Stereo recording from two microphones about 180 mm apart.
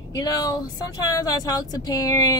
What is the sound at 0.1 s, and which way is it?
Speech, 20° left (ahead or behind).